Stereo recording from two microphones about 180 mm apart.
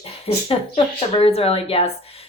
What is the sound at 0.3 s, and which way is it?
Speech, 30° left (ahead or behind).